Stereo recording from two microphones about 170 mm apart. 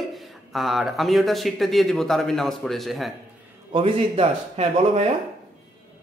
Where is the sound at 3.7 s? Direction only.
35° right (ahead or behind).